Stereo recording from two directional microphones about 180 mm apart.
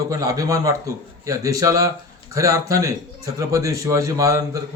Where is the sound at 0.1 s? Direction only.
20° right (ahead or behind).